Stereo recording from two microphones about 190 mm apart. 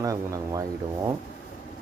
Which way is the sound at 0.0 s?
15° right (ahead or behind).